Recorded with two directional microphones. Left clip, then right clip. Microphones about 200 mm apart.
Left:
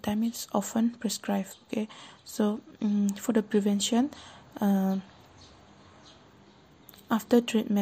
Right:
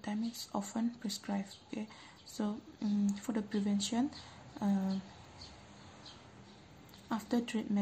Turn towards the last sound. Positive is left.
turn(degrees=40)  # may be behind; listen again after turning